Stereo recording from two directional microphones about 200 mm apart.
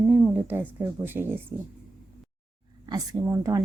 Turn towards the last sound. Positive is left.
turn(degrees=-20)  # may be behind; listen again after turning